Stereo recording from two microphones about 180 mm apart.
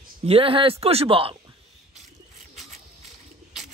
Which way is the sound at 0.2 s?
30° right (ahead or behind).